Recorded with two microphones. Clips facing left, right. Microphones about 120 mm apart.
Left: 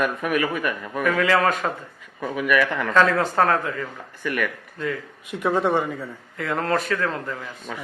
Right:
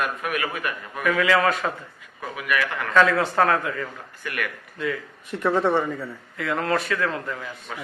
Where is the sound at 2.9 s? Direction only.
40° left (ahead or behind).